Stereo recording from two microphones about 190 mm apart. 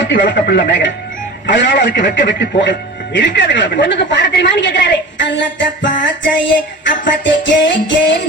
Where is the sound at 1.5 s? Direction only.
70° left (ahead or behind).